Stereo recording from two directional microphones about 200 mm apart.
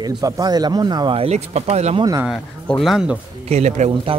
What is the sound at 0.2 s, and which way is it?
Speech, 20° right (ahead or behind).